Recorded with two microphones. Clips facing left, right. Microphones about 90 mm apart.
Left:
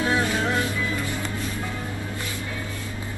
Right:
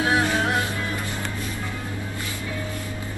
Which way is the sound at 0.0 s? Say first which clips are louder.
Right 2 dB; 20° right (ahead or behind).